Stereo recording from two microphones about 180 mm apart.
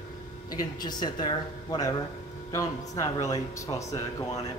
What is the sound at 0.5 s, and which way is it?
Speech, 25° left (ahead or behind).